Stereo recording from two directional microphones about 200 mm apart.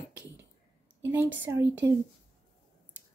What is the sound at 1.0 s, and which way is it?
Speech, 10° right (ahead or behind).